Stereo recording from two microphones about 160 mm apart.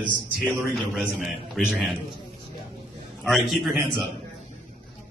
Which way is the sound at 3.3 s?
Centre (ahead or behind).